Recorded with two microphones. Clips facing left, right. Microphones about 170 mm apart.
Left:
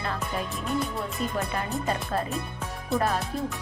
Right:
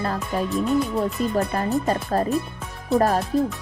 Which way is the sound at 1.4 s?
40° right (ahead or behind).